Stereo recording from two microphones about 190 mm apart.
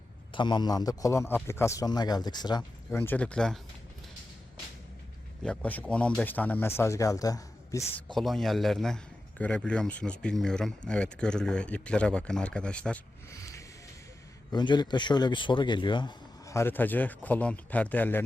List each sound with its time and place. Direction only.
0.3 s a man's voice: 25° left (ahead or behind); by 3.6 s 5° left (ahead or behind)
5.4 s speech: 5° left (ahead or behind)
8.0 s speech: centre (ahead or behind)
13.4 s a sound: 15° left (ahead or behind)
14.5 s a man's voice: 25° left (ahead or behind)